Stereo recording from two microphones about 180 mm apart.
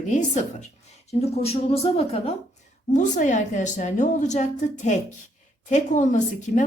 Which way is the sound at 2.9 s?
45° left (ahead or behind).